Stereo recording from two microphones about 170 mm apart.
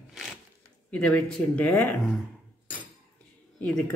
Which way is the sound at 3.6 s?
5° left (ahead or behind).